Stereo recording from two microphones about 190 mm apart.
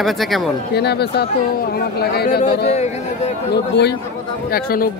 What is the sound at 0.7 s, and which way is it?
Speech, 60° left (ahead or behind).